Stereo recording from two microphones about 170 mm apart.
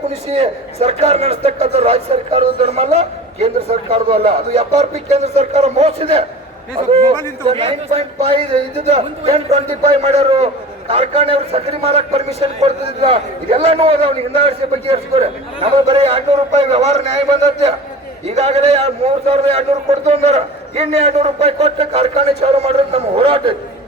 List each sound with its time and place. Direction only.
0.1 s a man's voice: 35° right (ahead or behind)
18.3 s a man's voice: 35° right (ahead or behind)